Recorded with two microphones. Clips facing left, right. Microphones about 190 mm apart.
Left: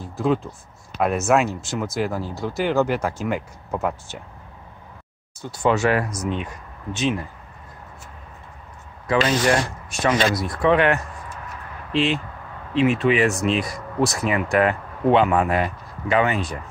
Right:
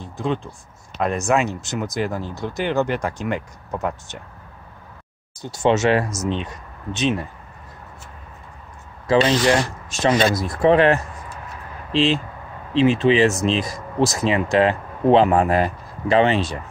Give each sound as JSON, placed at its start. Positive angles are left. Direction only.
{"t": 0.0, "sound": "speech", "side_deg": 5}
{"t": 5.6, "sound": "speech", "side_deg": -25}
{"t": 9.1, "sound": "speech", "side_deg": -25}